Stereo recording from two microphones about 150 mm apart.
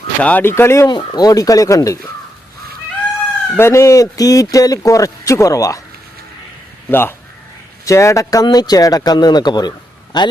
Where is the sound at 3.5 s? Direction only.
20° left (ahead or behind).